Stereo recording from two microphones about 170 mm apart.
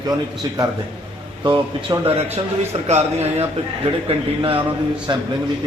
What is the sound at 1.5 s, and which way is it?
Speech, 25° right (ahead or behind).